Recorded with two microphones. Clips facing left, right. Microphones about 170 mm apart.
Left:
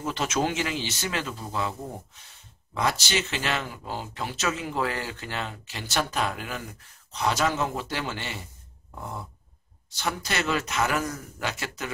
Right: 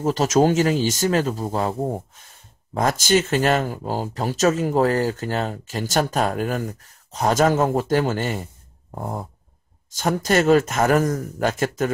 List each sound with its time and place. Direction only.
0.0 s speech: 40° right (ahead or behind)